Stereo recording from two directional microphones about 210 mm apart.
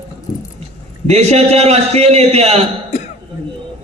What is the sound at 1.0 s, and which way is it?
A man's voice, 30° right (ahead or behind).